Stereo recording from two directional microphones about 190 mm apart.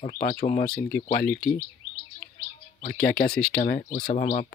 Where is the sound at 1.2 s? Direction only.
5° left (ahead or behind).